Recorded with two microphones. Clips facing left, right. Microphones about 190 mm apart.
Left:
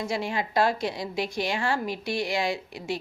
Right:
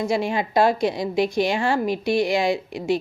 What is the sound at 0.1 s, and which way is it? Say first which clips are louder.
A woman's voice: right 6 dB; 15° right (ahead or behind).